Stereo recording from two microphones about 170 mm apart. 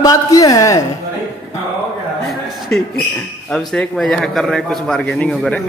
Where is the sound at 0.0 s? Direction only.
20° left (ahead or behind).